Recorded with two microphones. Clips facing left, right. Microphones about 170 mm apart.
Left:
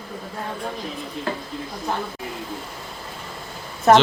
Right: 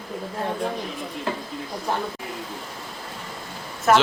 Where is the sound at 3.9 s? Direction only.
30° left (ahead or behind).